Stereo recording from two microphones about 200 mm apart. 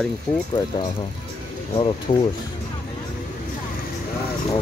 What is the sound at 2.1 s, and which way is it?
Speech, 30° left (ahead or behind).